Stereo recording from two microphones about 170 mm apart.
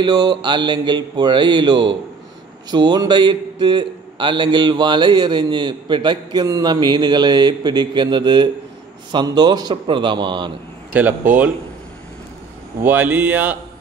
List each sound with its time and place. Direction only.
0.0 s a man's voice: 25° right (ahead or behind)
10.9 s speech: 10° right (ahead or behind)
12.8 s speech: 10° right (ahead or behind)